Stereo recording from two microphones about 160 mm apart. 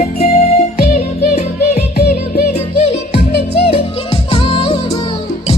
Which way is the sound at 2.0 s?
70° left (ahead or behind).